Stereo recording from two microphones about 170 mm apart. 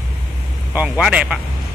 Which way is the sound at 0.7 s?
10° right (ahead or behind).